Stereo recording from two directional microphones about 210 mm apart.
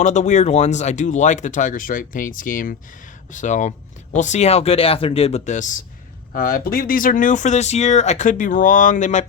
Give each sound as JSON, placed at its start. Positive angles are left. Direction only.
{"t": 0.0, "sound": "speech", "side_deg": 35}